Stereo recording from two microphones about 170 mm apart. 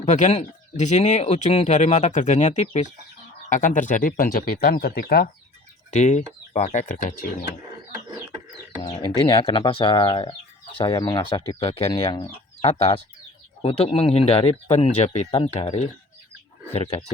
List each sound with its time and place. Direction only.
0.0 s speech: 45° left (ahead or behind); by 5.3 s 60° left (ahead or behind)
5.9 s speech: 45° left (ahead or behind)
8.8 s speech: 25° left (ahead or behind)